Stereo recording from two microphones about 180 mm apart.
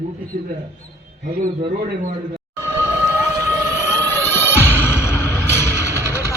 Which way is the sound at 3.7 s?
15° left (ahead or behind).